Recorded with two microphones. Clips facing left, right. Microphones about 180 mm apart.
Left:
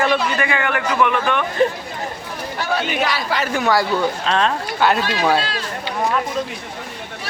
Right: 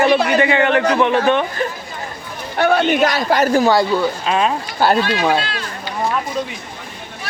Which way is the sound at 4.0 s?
10° right (ahead or behind).